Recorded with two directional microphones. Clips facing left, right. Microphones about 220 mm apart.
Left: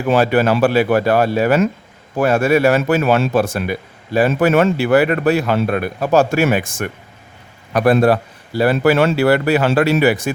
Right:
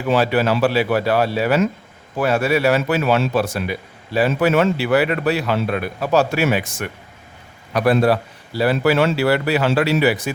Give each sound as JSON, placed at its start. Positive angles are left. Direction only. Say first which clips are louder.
{"t": 0.1, "sound": "a man's voice", "louder": "left 3 dB", "side_deg": 50}